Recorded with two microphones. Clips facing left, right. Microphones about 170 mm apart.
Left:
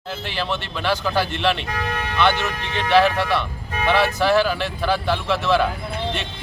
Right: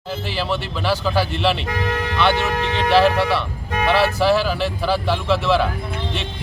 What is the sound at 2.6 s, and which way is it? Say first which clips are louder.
Speech: right 6 dB; 90° right.